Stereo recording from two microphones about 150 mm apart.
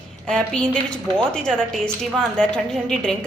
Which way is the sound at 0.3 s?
5° left (ahead or behind).